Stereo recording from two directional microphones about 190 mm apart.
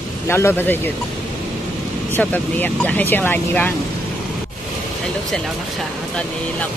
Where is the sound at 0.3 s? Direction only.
10° left (ahead or behind).